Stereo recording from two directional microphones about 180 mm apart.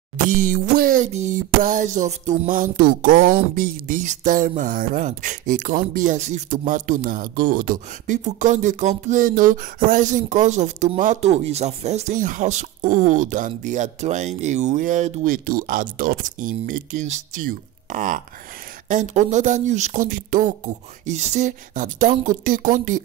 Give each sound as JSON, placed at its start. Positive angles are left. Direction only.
{"t": 0.3, "sound": "music", "side_deg": -50}